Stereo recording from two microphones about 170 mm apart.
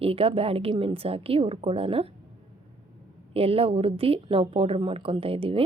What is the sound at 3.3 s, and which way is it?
Speech, 35° right (ahead or behind).